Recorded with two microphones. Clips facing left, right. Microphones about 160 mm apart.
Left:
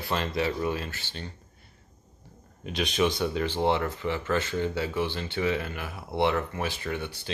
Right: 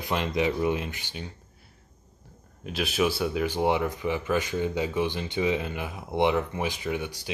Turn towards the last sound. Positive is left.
turn(degrees=-15)  # may be behind; listen again after turning